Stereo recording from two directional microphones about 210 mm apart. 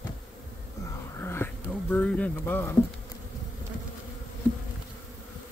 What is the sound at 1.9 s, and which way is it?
Speech, 5° left (ahead or behind).